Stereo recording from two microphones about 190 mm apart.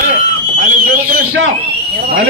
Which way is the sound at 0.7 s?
50° right (ahead or behind).